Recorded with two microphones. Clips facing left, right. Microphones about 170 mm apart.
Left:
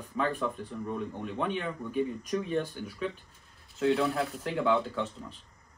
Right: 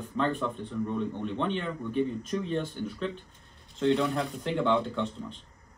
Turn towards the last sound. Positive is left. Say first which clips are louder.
# right 2 dB
turn(degrees=5)  # may be behind; listen again after turning